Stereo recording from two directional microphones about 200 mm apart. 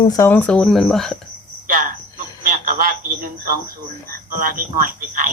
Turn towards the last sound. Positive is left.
turn(degrees=-45)  # may be behind; listen again after turning